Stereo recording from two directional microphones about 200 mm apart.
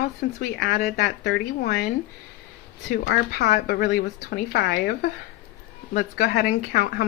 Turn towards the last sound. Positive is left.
turn(degrees=45)  # may be behind; listen again after turning